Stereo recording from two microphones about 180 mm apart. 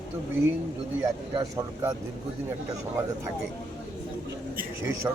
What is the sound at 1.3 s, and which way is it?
Speech, 20° right (ahead or behind).